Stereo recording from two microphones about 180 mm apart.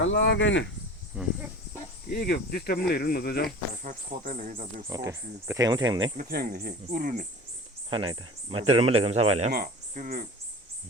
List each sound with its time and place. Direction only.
0.0 s speech: 85° left
1.1 s speech: 5° right (ahead or behind)
2.0 s speech: 60° left (ahead or behind)
3.8 s speech: 50° right (ahead or behind)
4.9 s speech: 20° right (ahead or behind)
6.1 s speech: 55° right (ahead or behind)
7.9 s speech: 25° right (ahead or behind)
9.5 s speech: 50° right (ahead or behind)